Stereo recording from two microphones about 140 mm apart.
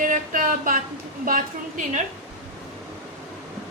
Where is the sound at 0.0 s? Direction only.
80° right.